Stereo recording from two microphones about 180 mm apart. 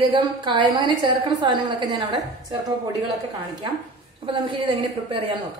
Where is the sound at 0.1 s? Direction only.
25° right (ahead or behind).